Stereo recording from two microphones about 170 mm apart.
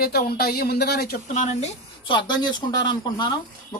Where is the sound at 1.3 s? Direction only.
45° left (ahead or behind).